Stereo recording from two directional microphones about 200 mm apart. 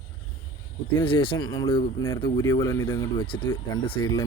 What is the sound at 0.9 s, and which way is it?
Speech, 25° left (ahead or behind).